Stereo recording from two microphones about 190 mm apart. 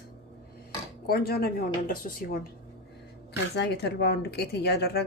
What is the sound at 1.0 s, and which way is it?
Speech, 55° left (ahead or behind).